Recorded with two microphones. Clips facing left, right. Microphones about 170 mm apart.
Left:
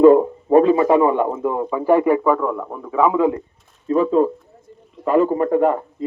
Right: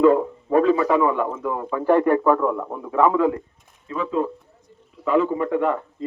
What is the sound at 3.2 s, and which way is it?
Speech, 15° left (ahead or behind).